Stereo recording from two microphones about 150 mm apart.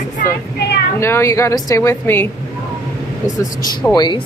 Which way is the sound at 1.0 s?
15° left (ahead or behind).